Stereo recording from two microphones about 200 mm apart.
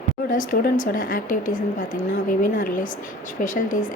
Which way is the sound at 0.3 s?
45° left (ahead or behind).